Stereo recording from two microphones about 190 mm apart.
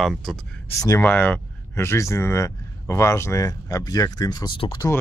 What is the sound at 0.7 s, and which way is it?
Speech, 15° left (ahead or behind).